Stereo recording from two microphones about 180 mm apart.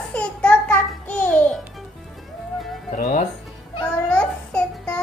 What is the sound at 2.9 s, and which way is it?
Music, 45° left (ahead or behind).